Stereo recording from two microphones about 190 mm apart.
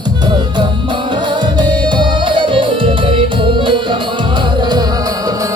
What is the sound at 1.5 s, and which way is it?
Music, 25° right (ahead or behind).